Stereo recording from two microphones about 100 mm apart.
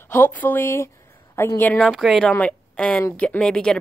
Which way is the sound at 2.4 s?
10° left (ahead or behind).